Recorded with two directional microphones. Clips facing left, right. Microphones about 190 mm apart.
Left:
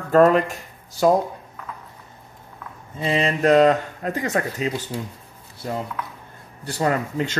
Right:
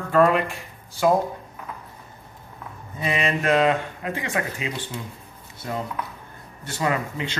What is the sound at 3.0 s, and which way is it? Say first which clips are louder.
Speech: left 4 dB; 35° left (ahead or behind).